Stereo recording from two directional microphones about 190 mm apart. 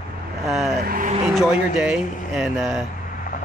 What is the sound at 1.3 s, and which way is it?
Speech, 5° right (ahead or behind).